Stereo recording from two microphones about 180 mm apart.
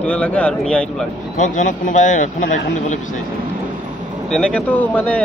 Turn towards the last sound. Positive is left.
turn(degrees=10)  # may be behind; listen again after turning